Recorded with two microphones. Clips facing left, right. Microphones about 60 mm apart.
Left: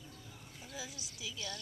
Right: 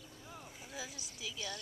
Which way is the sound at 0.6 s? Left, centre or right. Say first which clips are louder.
Left 1 dB; centre.